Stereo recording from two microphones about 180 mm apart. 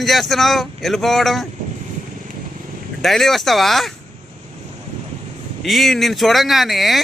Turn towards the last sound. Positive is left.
turn(degrees=0)  # may be behind; listen again after turning